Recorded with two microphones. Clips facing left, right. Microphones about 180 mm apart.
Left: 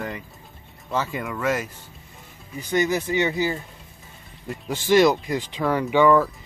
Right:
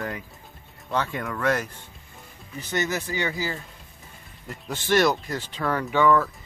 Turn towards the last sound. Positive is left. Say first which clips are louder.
# left 3 dB
turn(degrees=10)  # may be behind; listen again after turning